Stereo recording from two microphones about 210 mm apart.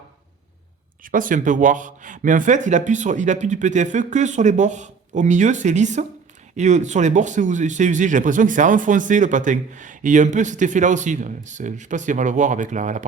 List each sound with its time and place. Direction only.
1.0 s speech: 40° right (ahead or behind)